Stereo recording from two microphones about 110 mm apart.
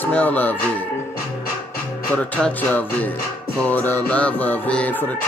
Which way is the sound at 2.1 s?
15° left (ahead or behind).